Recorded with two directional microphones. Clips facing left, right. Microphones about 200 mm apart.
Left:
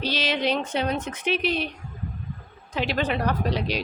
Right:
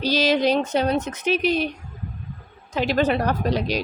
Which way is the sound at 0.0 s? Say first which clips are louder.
Right 6 dB; 40° right (ahead or behind).